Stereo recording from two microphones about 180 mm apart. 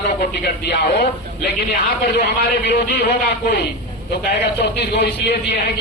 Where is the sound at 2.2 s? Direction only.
65° left (ahead or behind).